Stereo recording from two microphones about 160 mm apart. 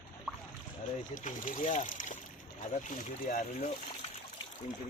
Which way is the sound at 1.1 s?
55° left (ahead or behind).